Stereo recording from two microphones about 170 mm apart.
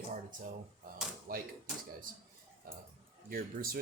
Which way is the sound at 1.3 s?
60° right (ahead or behind).